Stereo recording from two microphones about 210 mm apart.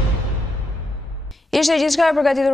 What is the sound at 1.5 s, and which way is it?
A woman's voice, centre (ahead or behind).